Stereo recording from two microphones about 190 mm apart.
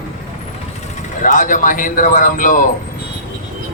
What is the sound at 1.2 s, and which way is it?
A man's voice, 45° left (ahead or behind).